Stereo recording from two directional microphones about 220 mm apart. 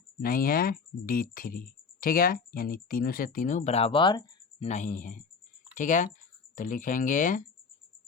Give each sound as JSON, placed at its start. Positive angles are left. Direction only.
{"t": 0.2, "sound": "speech", "side_deg": 40}
{"t": 4.6, "sound": "speech", "side_deg": 35}